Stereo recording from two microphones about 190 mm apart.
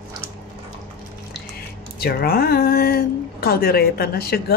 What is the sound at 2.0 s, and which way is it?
A woman's voice, 50° left (ahead or behind).